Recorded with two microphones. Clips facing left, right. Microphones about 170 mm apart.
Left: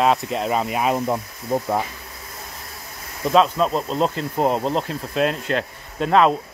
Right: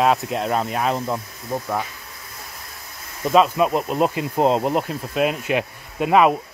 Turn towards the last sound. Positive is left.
turn(degrees=-10)  # may be behind; listen again after turning